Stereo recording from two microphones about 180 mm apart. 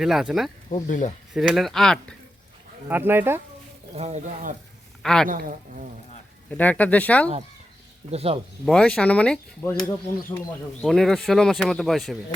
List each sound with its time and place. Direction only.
0.0 s speech: centre (ahead or behind)
0.7 s speech: 45° left (ahead or behind)
1.3 s speech: centre (ahead or behind)
2.9 s speech: 10° right (ahead or behind)
3.9 s speech: 40° right (ahead or behind)
5.0 s speech: 5° left (ahead or behind)
5.3 s speech: 50° right (ahead or behind)
6.5 s speech: 10° left (ahead or behind)
8.1 s speech: 35° right (ahead or behind)
8.6 s speech: 5° left (ahead or behind)